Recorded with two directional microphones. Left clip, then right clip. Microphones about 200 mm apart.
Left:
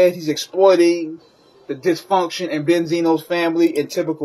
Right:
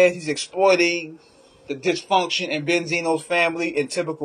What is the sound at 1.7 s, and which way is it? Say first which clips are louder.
Speech: left 3 dB; 15° right (ahead or behind).